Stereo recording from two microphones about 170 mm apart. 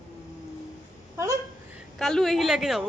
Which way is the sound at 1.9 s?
Centre (ahead or behind).